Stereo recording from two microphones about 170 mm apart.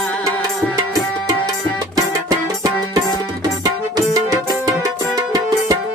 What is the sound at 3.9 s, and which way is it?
Music, 20° right (ahead or behind).